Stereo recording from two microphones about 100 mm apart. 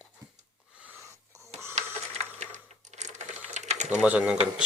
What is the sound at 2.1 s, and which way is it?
Coin, 90° right.